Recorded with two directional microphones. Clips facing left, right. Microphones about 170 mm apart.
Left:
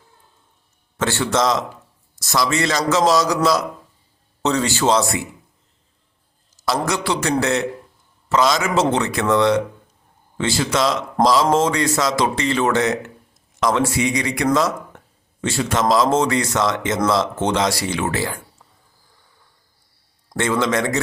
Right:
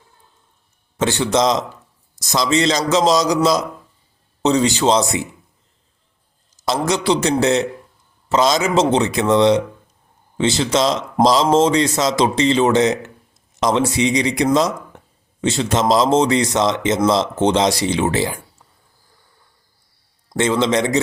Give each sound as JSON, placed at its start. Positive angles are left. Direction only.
{"t": 0.9, "sound": "speech", "side_deg": -20}
{"t": 6.7, "sound": "speech", "side_deg": -20}
{"t": 20.3, "sound": "speech", "side_deg": -20}